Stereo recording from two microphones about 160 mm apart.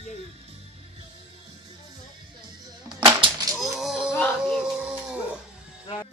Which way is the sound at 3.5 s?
Centre (ahead or behind).